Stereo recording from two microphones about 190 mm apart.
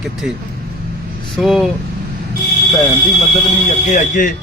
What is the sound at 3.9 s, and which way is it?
Speech, 45° left (ahead or behind).